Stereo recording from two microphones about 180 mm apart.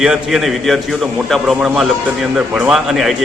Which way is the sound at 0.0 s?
5° right (ahead or behind).